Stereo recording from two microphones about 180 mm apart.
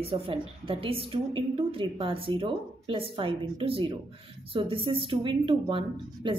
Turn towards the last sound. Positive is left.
turn(degrees=-30)  # may be behind; listen again after turning